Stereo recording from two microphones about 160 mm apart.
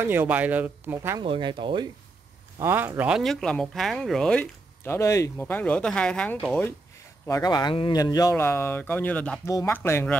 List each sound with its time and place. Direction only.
0.0 s speech: 15° right (ahead or behind)
1.2 s speech: 30° right (ahead or behind)
2.6 s speech: 15° right (ahead or behind); by 6.3 s 5° left (ahead or behind)
7.2 s speech: 20° left (ahead or behind)